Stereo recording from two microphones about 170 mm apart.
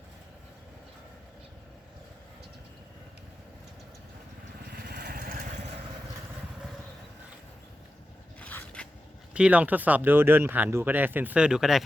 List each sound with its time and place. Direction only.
4.7 s vehicle: 65° right (ahead or behind)
8.4 s scrape: 10° left (ahead or behind)
9.3 s speech: 5° right (ahead or behind)